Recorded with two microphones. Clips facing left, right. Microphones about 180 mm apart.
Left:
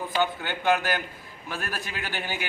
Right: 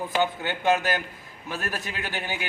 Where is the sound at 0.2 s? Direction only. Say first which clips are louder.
Right 1 dB; 20° right (ahead or behind).